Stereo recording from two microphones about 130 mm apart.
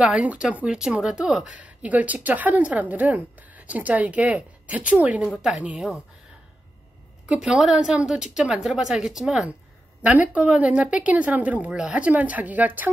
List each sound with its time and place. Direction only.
0.0 s speech: 10° right (ahead or behind)
7.2 s a woman's voice: 5° right (ahead or behind)